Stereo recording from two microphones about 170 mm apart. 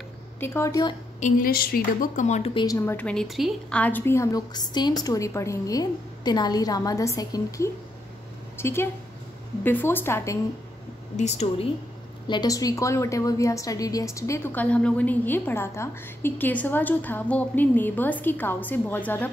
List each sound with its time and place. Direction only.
0.4 s a woman's voice: 15° left (ahead or behind)
1.2 s speech: 55° left (ahead or behind)
2.5 s a woman's voice: 20° left (ahead or behind)
11.1 s speech: 40° left (ahead or behind)
12.3 s a woman's voice: 25° left (ahead or behind)